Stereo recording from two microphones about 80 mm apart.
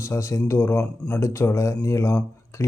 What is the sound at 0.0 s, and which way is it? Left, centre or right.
A man's voice, left.